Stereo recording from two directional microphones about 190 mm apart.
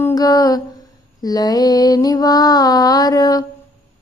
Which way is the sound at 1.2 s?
20° left (ahead or behind).